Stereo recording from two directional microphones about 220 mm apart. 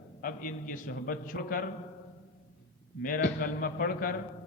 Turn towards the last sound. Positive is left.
turn(degrees=40)  # may be behind; listen again after turning